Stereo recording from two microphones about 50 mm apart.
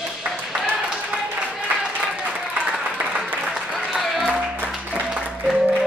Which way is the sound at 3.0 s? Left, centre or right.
Right.